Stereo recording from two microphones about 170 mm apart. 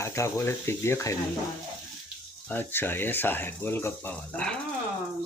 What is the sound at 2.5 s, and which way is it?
Speech, 10° left (ahead or behind).